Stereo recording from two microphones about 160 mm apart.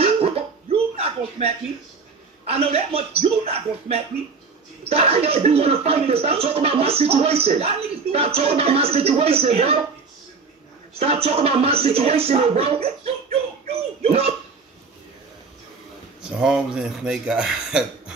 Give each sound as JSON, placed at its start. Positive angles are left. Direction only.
{"t": 0.0, "sound": "cough", "side_deg": -40}
{"t": 2.4, "sound": "speech", "side_deg": -40}
{"t": 11.0, "sound": "speech", "side_deg": -40}
{"t": 16.3, "sound": "speech", "side_deg": -5}